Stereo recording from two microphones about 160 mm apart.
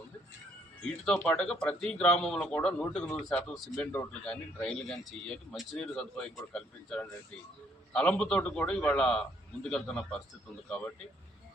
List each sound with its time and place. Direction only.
1.2 s a man's voice: 10° left (ahead or behind)